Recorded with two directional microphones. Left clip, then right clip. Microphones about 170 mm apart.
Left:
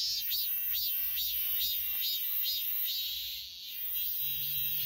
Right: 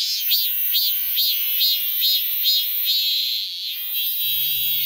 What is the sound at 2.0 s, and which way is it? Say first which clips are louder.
Frog: right 16 dB; 25° left (ahead or behind).